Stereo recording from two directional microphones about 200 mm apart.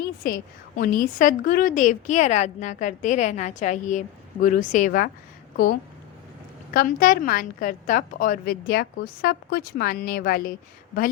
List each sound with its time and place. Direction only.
0.2 s a woman's voice: 45° left (ahead or behind)
6.7 s a woman's voice: 45° left (ahead or behind)